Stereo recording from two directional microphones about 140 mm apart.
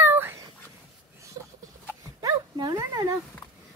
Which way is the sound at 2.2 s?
30° right (ahead or behind).